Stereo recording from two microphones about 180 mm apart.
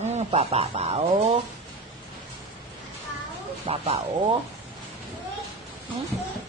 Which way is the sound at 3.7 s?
35° right (ahead or behind).